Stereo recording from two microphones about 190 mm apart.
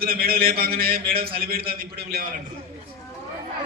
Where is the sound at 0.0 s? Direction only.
50° right (ahead or behind).